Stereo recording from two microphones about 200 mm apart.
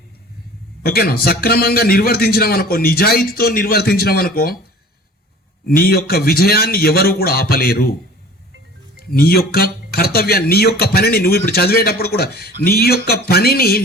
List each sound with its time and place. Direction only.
0.8 s speech: 50° left (ahead or behind)
5.6 s speech: 50° left (ahead or behind)
9.0 s speech: 50° left (ahead or behind)